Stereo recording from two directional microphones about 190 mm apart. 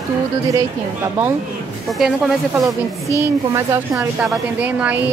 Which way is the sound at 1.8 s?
Centre (ahead or behind).